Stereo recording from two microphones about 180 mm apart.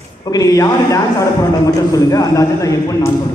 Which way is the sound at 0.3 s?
20° left (ahead or behind).